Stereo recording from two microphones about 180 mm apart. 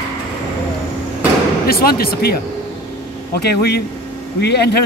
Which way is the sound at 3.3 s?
65° left (ahead or behind).